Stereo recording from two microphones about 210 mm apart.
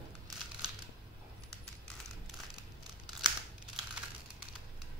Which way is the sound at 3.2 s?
5° right (ahead or behind).